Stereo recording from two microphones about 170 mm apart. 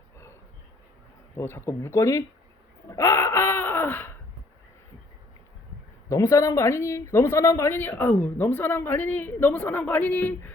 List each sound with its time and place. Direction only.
1.4 s speech: 15° left (ahead or behind)
2.9 s wail: 15° left (ahead or behind)
6.1 s speech: 20° left (ahead or behind)